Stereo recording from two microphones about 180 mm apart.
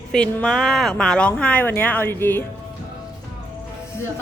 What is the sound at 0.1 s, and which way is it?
A woman's voice, 5° left (ahead or behind).